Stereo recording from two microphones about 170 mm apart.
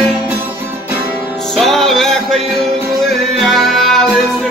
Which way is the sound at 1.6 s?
Centre (ahead or behind).